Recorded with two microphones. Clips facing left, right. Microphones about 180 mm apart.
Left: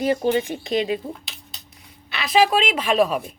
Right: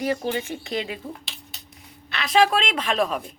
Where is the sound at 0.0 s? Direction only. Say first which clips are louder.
Left 5 dB; 25° left (ahead or behind).